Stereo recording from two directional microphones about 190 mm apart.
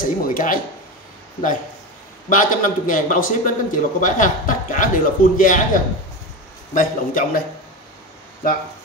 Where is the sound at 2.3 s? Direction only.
45° left (ahead or behind).